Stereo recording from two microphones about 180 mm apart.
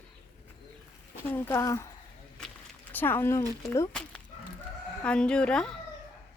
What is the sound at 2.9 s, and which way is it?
Speech, 10° left (ahead or behind).